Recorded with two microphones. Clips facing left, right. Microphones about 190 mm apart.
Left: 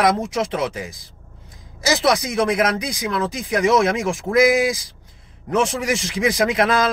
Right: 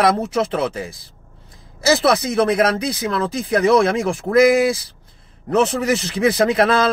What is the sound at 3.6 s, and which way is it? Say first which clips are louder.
Speech: right 2 dB; 30° right (ahead or behind).